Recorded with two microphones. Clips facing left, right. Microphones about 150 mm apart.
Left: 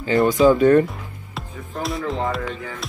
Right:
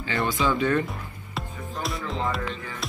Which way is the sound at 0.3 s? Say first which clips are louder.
Left 10 dB; 45° left (ahead or behind).